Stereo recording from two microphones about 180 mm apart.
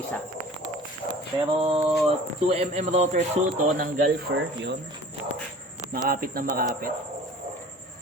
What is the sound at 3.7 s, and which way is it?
A man's voice, 55° right (ahead or behind).